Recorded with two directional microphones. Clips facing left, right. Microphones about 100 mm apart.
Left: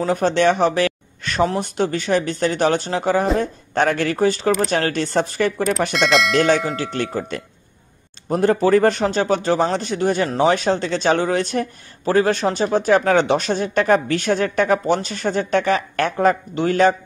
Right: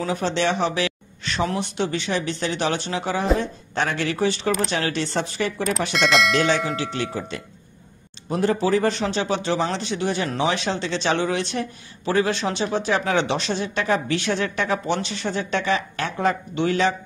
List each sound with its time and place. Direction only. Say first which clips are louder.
0.0 s a man's voice: left 6 dB; 50° left (ahead or behind)
5.9 s speech: even; centre (ahead or behind)
6.3 s a man's voice: left 4 dB; 50° left (ahead or behind)